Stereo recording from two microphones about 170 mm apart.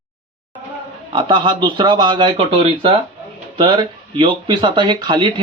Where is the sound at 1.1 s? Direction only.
25° right (ahead or behind).